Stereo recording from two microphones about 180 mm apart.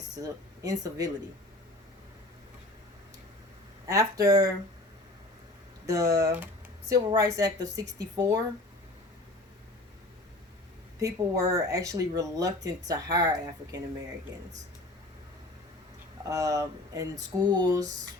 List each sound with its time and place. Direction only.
0.2 s speech: 20° right (ahead or behind)
3.8 s speech: 20° right (ahead or behind)
5.8 s speech: 20° right (ahead or behind)
11.0 s speech: 20° right (ahead or behind)
16.2 s speech: 20° right (ahead or behind)